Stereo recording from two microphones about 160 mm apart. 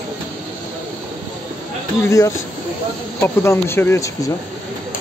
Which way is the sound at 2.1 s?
20° left (ahead or behind).